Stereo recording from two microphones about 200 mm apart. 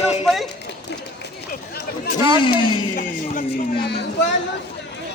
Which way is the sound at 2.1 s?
20° right (ahead or behind).